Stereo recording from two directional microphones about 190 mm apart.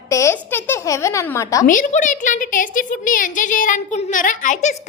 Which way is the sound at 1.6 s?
40° left (ahead or behind).